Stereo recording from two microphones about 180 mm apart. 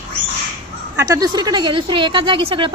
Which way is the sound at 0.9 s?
20° right (ahead or behind).